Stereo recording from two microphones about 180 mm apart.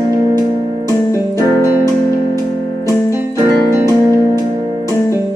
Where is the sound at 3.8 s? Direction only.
20° right (ahead or behind).